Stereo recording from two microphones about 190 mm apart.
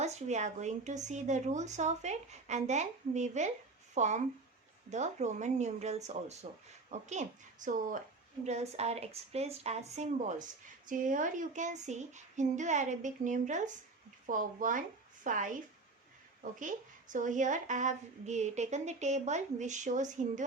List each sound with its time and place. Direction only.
0.0 s a woman's voice: 35° right (ahead or behind)